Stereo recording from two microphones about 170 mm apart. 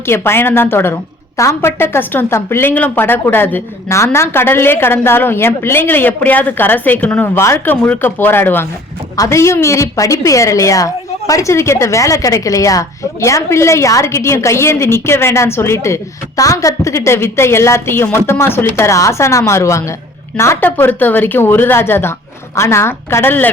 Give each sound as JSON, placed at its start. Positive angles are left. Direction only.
{"t": 0.1, "sound": "a woman's voice", "side_deg": 15}